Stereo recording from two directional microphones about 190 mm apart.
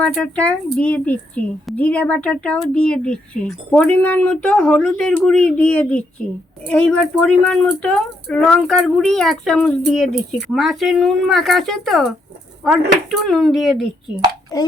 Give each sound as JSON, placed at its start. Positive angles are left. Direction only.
{"t": 0.0, "sound": "speech", "side_deg": 5}
{"t": 14.5, "sound": "a child's voice", "side_deg": 20}